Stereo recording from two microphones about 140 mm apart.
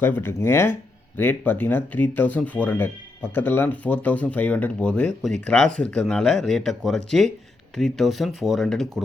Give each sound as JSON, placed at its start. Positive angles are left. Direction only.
{"t": 0.0, "sound": "speech", "side_deg": 15}